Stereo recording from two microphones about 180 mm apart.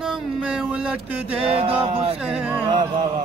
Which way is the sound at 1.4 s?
30° right (ahead or behind).